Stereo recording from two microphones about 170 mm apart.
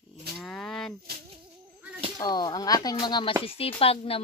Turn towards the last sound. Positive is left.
turn(degrees=35)  # may be behind; listen again after turning